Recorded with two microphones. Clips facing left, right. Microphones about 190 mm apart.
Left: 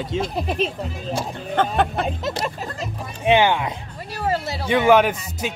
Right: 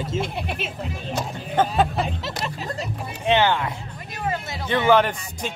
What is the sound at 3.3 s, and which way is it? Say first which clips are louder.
Music: left 3 dB; 15° left (ahead or behind).